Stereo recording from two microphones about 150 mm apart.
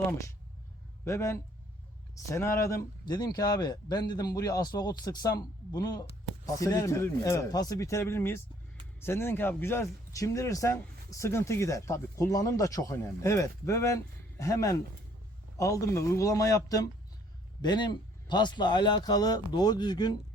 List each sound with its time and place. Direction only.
1.0 s speech: 20° left (ahead or behind)